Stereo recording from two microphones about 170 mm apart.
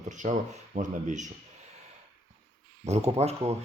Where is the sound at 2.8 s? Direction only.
40° right (ahead or behind).